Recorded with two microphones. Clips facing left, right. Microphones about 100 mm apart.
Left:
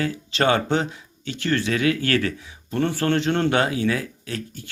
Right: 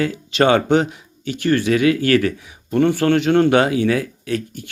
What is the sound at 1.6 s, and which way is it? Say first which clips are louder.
Speech: right 6 dB; 55° right (ahead or behind).